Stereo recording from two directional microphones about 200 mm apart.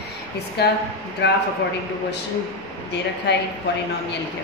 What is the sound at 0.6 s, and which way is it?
Speech, 55° left (ahead or behind).